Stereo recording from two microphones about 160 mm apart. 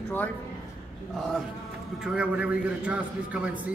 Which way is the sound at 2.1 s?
10° right (ahead or behind).